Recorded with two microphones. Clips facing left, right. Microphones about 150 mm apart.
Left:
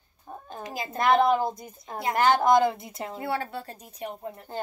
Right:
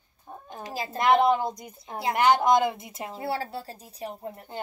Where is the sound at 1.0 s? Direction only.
20° right (ahead or behind).